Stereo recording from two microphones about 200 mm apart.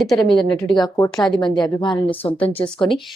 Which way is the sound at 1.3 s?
25° left (ahead or behind).